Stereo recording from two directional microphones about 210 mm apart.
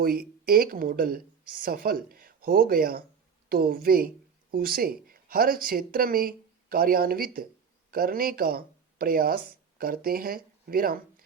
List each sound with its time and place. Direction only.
0.0 s speech: 45° right (ahead or behind)